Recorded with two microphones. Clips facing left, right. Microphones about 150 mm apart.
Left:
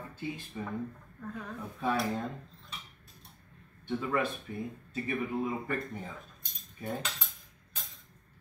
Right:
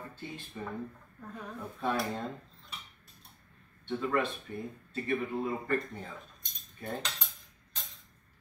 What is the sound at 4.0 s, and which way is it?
Speech, 10° left (ahead or behind).